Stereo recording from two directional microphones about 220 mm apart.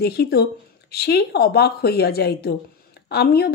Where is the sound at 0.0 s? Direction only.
45° left (ahead or behind).